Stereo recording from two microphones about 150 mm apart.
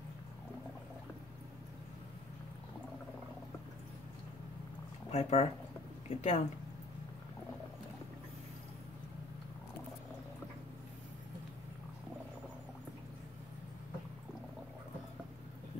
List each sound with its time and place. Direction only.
5.1 s speech: 45° left (ahead or behind)